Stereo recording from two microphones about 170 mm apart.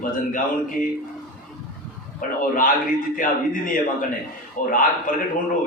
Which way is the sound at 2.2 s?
55° left (ahead or behind).